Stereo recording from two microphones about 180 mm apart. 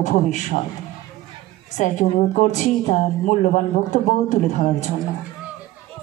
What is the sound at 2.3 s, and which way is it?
Speech, 45° left (ahead or behind).